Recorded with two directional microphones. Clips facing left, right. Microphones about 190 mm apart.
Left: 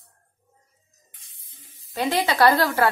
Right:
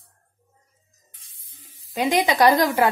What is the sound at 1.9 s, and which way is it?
Speech, 15° right (ahead or behind).